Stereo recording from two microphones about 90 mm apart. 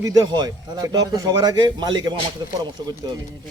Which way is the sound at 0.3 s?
45° right (ahead or behind).